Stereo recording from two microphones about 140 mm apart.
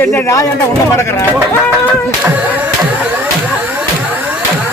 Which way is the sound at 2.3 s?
10° right (ahead or behind).